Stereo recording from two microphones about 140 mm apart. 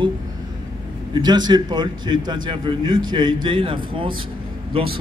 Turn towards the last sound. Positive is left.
turn(degrees=-40)  # may be behind; listen again after turning